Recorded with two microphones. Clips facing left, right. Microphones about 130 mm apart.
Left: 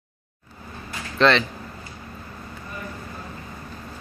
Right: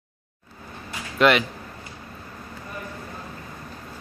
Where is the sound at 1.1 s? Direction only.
10° right (ahead or behind).